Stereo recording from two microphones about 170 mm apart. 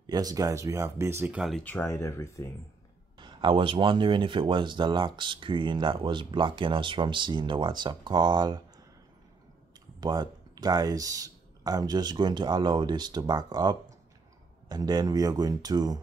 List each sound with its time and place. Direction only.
0.0 s speech: 20° right (ahead or behind); by 1.6 s 5° right (ahead or behind)
1.6 s speech: 10° left (ahead or behind)
3.2 s speech: 30° right (ahead or behind)
9.9 s speech: 25° right (ahead or behind)